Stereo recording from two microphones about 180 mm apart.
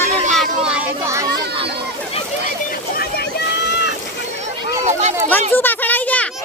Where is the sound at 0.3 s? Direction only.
5° right (ahead or behind).